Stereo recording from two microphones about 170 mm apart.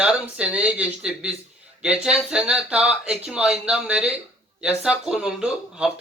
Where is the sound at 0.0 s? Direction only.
5° right (ahead or behind).